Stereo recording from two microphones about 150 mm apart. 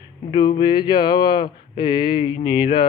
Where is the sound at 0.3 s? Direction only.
30° left (ahead or behind).